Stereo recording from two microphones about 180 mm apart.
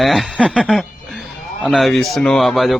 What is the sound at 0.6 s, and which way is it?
Chuckle, centre (ahead or behind).